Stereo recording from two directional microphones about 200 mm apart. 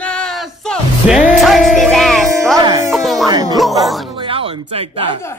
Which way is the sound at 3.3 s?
20° right (ahead or behind).